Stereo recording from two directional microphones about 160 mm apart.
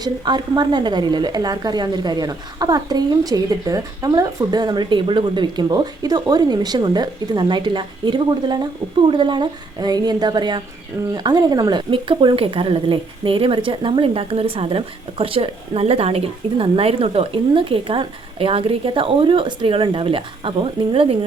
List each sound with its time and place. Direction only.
0.0 s speech: 25° right (ahead or behind)